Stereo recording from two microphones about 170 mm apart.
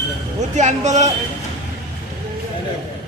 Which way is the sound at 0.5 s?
45° right (ahead or behind).